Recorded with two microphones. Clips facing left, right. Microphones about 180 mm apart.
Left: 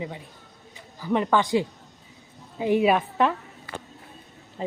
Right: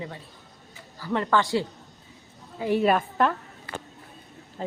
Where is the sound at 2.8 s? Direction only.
Centre (ahead or behind).